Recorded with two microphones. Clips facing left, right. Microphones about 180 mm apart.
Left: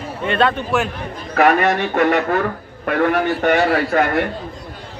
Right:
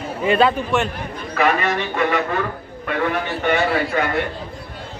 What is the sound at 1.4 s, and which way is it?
A man's voice, 50° left (ahead or behind).